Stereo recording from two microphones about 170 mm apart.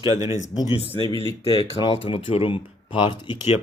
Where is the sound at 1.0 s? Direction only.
30° left (ahead or behind).